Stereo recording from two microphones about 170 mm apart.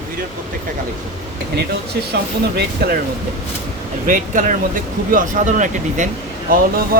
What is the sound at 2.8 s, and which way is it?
Speech, 65° right (ahead or behind).